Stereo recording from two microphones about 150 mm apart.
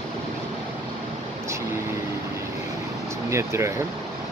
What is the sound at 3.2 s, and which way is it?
Speech, 20° right (ahead or behind).